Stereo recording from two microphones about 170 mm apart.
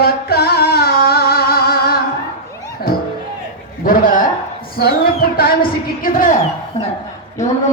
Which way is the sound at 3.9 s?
55° left (ahead or behind).